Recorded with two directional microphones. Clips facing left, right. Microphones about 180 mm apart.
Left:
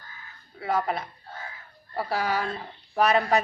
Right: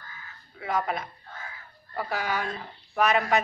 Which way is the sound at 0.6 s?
30° left (ahead or behind).